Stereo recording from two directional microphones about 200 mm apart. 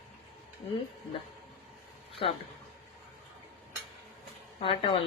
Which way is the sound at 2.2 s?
25° left (ahead or behind).